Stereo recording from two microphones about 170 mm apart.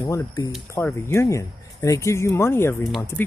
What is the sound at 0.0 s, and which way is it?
Speech, 20° left (ahead or behind).